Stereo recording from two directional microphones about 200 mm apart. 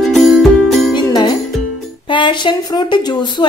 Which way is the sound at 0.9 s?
20° left (ahead or behind).